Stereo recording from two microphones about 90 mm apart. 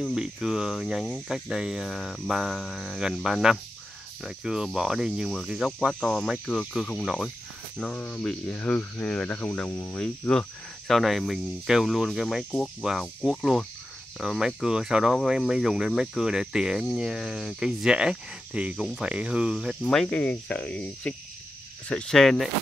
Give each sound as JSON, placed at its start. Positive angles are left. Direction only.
{"t": 0.1, "sound": "speech", "side_deg": -5}
{"t": 4.2, "sound": "cricket", "side_deg": -5}
{"t": 4.7, "sound": "speech", "side_deg": -5}
{"t": 9.9, "sound": "speech", "side_deg": 10}
{"t": 10.9, "sound": "speech", "side_deg": 0}
{"t": 18.8, "sound": "cricket", "side_deg": -10}
{"t": 19.8, "sound": "speech", "side_deg": 10}